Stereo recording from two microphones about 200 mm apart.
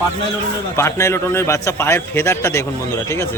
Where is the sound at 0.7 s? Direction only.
15° left (ahead or behind).